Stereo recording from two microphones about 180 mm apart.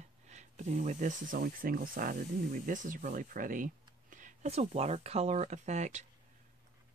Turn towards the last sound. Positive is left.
turn(degrees=-40)  # may be behind; listen again after turning